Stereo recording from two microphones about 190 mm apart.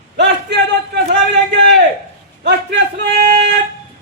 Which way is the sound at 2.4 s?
65° right (ahead or behind).